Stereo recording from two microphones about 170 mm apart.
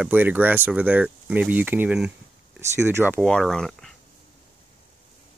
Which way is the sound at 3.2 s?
5° left (ahead or behind).